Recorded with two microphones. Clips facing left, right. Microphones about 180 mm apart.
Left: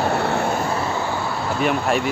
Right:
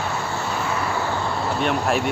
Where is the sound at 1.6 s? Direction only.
Centre (ahead or behind).